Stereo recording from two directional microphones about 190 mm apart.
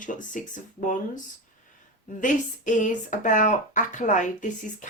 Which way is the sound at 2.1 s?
40° left (ahead or behind).